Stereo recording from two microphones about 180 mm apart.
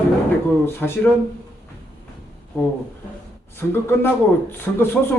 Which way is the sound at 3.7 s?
10° left (ahead or behind).